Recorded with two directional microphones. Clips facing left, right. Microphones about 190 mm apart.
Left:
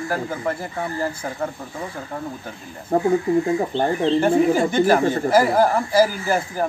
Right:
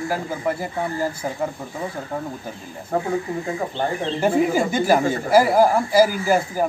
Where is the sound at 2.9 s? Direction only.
35° left (ahead or behind).